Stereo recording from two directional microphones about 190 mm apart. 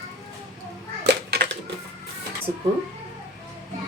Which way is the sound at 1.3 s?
60° right (ahead or behind).